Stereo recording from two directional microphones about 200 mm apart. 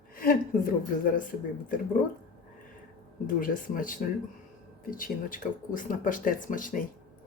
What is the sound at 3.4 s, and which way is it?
Speech, 45° left (ahead or behind).